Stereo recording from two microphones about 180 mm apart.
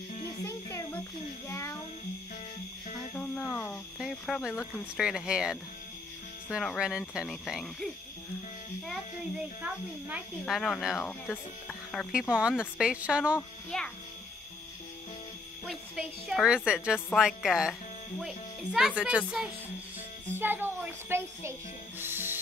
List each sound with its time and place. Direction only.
0.2 s music: 15° left (ahead or behind)
1.5 s a child's voice: 15° left (ahead or behind)
3.2 s music: 10° left (ahead or behind)
4.0 s speech: centre (ahead or behind)
5.0 s speech: 5° right (ahead or behind)
9.6 s speech: 10° right (ahead or behind)
10.4 s speech: 5° left (ahead or behind)
15.6 s speech: 5° right (ahead or behind)